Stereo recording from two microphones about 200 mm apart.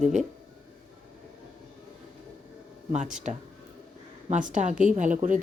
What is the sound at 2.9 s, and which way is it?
Speech, 35° right (ahead or behind).